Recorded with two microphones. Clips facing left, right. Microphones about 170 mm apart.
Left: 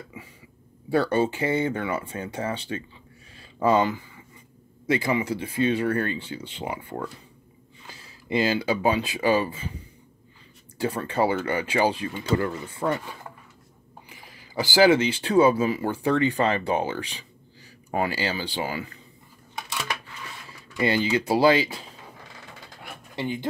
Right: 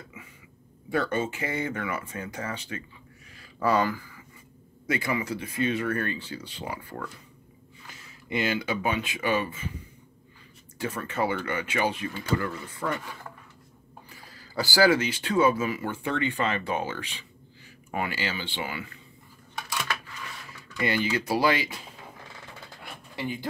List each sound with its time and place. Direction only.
0.2 s speech: 35° left (ahead or behind)
3.3 s a sound: 25° left (ahead or behind)
4.8 s speech: 30° left (ahead or behind)
10.8 s speech: 30° left (ahead or behind)
14.0 s speech: 15° left (ahead or behind); by 18.9 s 35° left (ahead or behind)
20.7 s speech: 30° left (ahead or behind)
23.1 s speech: 25° left (ahead or behind)